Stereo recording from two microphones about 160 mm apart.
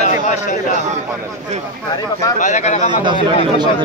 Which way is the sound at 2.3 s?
50° left (ahead or behind).